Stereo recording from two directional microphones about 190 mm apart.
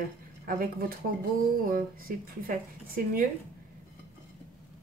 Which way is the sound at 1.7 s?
45° right (ahead or behind).